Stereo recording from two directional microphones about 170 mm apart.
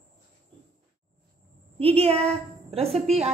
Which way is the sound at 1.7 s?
35° right (ahead or behind).